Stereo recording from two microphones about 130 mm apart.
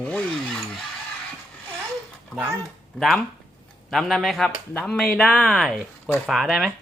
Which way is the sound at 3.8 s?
Centre (ahead or behind).